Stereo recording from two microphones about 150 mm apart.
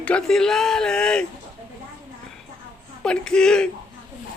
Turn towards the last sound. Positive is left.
turn(degrees=5)  # may be behind; listen again after turning